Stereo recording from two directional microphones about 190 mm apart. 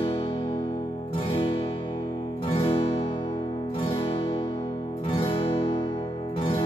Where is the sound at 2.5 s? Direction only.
30° left (ahead or behind).